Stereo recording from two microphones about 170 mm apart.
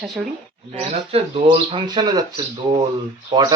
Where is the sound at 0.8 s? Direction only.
35° right (ahead or behind).